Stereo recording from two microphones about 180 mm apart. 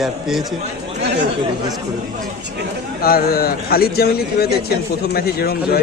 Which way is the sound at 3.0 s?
55° left (ahead or behind).